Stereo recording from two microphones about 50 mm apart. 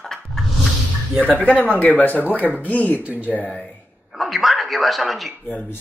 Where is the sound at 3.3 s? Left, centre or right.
Left.